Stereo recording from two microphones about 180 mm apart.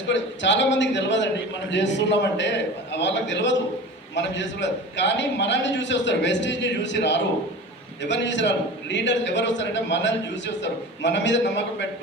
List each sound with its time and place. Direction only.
0.1 s a man's voice: 85° left